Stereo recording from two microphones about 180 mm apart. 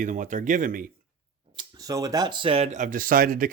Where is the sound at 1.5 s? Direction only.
20° right (ahead or behind).